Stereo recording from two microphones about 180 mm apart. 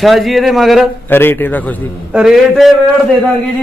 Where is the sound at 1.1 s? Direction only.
10° left (ahead or behind).